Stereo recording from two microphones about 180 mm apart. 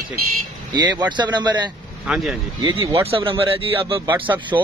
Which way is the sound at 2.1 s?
5° right (ahead or behind).